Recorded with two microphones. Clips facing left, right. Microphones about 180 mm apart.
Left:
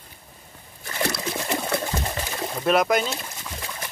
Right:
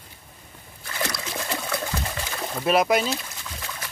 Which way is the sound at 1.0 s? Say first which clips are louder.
Left 3 dB; 25° left (ahead or behind).